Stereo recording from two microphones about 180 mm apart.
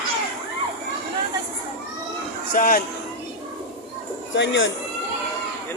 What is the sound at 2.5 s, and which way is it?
Speech, 50° left (ahead or behind).